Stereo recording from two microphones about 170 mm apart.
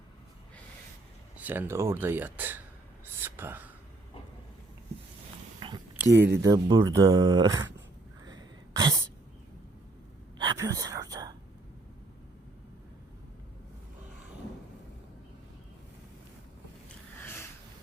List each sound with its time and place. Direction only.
1.4 s speech: 10° right (ahead or behind)
3.2 s whispering: 15° right (ahead or behind)
5.5 s a sound: 30° right (ahead or behind)
6.0 s speech: 10° right (ahead or behind)
6.4 s speech: 20° right (ahead or behind)
8.2 s a sound: 25° right (ahead or behind)
10.3 s whispering: 25° right (ahead or behind)